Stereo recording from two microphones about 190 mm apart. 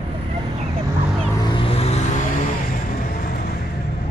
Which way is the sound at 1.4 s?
25° left (ahead or behind).